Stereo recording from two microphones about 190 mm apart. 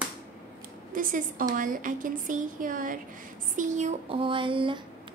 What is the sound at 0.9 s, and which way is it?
Speech, 45° right (ahead or behind).